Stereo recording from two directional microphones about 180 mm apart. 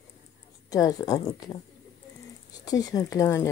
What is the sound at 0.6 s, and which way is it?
Speech, 20° left (ahead or behind).